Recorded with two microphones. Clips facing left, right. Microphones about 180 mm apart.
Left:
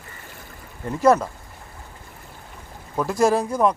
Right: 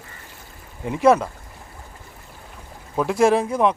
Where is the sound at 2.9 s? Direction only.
Centre (ahead or behind).